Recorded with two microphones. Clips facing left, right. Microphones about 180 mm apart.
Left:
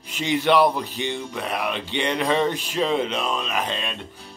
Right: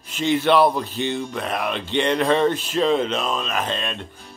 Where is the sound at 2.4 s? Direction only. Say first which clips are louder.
Right 3 dB; 15° left (ahead or behind).